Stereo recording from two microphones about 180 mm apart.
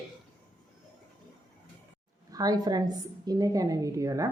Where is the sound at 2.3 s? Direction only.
20° right (ahead or behind).